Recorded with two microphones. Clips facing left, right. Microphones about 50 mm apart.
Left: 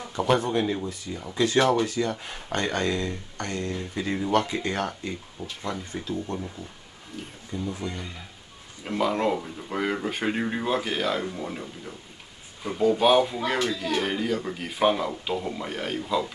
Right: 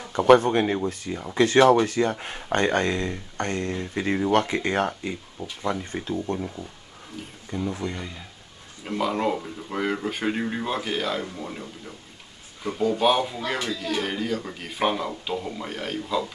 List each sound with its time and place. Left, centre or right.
0.1 s speech: right
1.1 s speech: right
4.6 s speech: right
5.7 s speech: right
7.2 s speech: centre
7.5 s speech: right
7.8 s speech: right
8.8 s speech: centre